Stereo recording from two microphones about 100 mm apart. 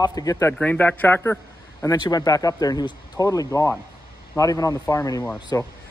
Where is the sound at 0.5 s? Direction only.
15° left (ahead or behind).